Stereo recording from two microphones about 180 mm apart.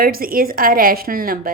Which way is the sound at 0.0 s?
55° right (ahead or behind).